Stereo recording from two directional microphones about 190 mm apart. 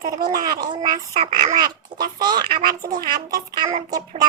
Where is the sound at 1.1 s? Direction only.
40° right (ahead or behind).